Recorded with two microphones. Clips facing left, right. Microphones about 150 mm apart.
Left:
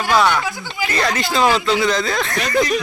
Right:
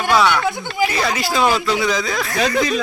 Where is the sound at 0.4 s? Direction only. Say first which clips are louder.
Right 5 dB; 60° right (ahead or behind).